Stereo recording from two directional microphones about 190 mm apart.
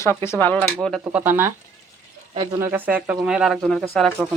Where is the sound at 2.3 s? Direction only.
30° right (ahead or behind).